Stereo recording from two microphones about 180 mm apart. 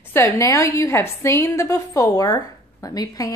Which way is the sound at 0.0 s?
15° left (ahead or behind).